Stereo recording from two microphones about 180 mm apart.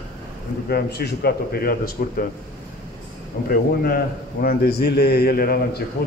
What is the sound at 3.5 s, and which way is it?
A man's voice, 55° left (ahead or behind).